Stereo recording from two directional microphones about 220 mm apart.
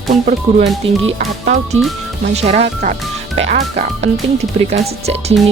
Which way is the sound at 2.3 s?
30° right (ahead or behind).